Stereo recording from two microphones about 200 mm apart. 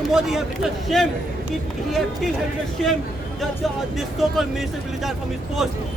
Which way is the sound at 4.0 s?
Centre (ahead or behind).